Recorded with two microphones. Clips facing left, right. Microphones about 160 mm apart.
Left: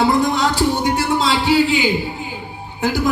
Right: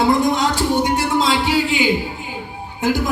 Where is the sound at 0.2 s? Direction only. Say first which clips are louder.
Left 1 dB; 20° right (ahead or behind).